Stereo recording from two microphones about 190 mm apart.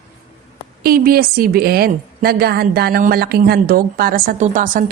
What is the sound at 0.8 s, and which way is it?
A woman's voice, 50° right (ahead or behind).